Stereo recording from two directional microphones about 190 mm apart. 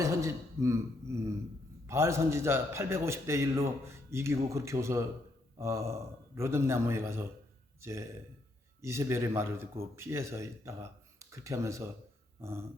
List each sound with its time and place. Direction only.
0.0 s a man's voice: 15° right (ahead or behind)
12.4 s dog: 15° right (ahead or behind)